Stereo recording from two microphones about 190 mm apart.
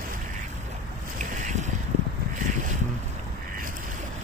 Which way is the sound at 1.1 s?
40° right (ahead or behind).